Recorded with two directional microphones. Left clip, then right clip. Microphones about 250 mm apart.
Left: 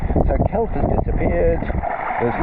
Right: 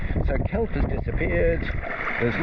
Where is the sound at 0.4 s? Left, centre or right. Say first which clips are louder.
Left 7 dB; centre.